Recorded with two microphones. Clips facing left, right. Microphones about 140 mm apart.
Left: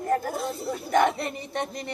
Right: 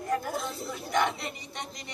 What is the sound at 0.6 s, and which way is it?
Speech, 55° left (ahead or behind).